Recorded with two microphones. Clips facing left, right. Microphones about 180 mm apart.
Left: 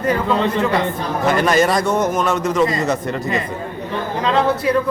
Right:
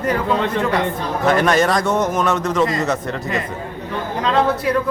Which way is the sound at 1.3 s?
Centre (ahead or behind).